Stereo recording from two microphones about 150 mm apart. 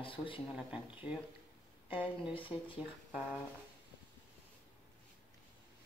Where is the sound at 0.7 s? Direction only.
5° right (ahead or behind).